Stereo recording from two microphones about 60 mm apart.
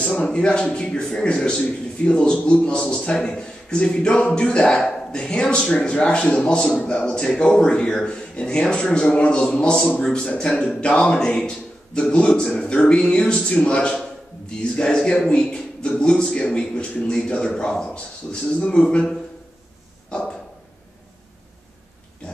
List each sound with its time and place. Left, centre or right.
0.1 s a man's voice: centre
10.8 s a man's voice: centre
20.1 s a sound: centre